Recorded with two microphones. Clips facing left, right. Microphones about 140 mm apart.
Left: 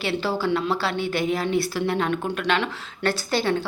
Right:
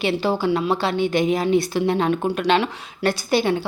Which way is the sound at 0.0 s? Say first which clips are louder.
Right 4 dB; 15° right (ahead or behind).